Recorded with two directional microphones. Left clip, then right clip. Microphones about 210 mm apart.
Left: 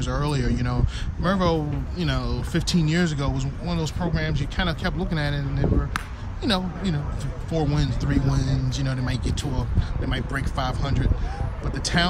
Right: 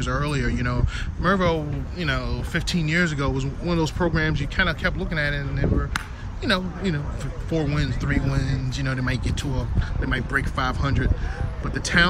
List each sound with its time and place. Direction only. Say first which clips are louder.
0.0 s speech: right 1 dB; 10° left (ahead or behind)